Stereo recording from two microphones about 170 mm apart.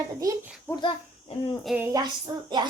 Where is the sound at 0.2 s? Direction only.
20° right (ahead or behind).